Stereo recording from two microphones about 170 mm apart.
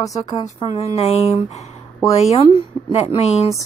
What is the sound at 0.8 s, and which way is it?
Speech, 35° left (ahead or behind).